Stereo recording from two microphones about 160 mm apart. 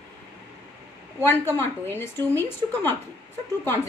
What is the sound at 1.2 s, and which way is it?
A woman's voice, 10° left (ahead or behind).